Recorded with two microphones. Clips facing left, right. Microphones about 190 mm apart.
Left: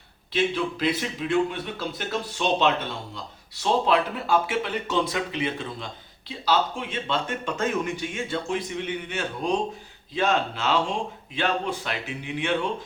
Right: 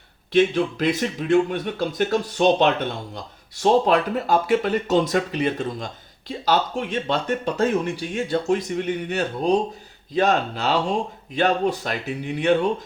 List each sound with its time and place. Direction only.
0.3 s speech: 45° right (ahead or behind)